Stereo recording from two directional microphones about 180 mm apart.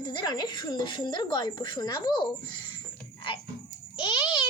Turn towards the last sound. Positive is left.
turn(degrees=25)  # may be behind; listen again after turning